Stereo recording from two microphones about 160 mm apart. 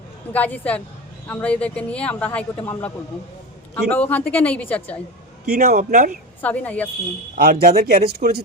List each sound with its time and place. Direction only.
0.3 s speech: 10° left (ahead or behind)
5.5 s a man's voice: 65° right (ahead or behind)
6.4 s speech: 10° left (ahead or behind)
7.3 s speech: 65° right (ahead or behind)